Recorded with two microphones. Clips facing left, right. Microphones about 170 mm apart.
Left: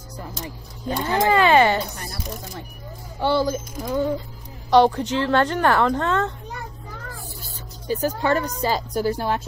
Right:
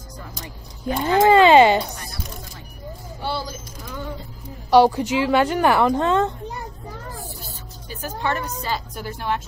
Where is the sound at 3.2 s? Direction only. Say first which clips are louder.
Left 8 dB; 50° left (ahead or behind).